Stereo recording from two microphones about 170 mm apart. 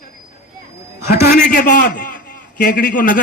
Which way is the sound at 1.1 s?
70° left (ahead or behind).